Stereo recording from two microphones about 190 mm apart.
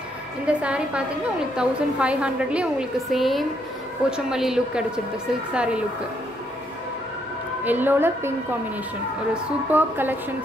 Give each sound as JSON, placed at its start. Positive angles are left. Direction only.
{"t": 0.5, "sound": "a woman's voice", "side_deg": -5}
{"t": 7.6, "sound": "a woman's voice", "side_deg": -10}